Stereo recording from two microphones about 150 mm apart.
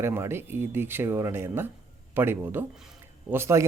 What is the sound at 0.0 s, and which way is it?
Speech, 15° right (ahead or behind).